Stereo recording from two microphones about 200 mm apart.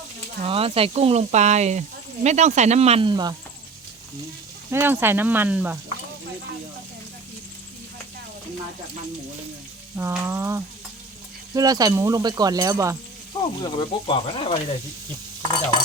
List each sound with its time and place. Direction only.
0.4 s speech: 30° right (ahead or behind)
4.7 s speech: 10° right (ahead or behind)
10.0 s speech: 15° right (ahead or behind)
13.6 s speech: 25° left (ahead or behind)
15.4 s stir: 20° left (ahead or behind)